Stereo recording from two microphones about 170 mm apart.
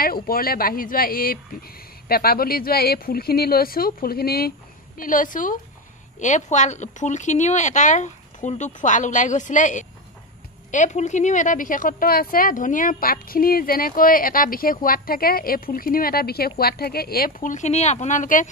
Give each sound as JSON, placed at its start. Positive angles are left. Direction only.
{"t": 0.0, "sound": "speech", "side_deg": 60}